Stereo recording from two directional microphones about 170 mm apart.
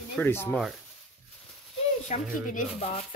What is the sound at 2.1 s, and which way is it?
Speech, 50° left (ahead or behind).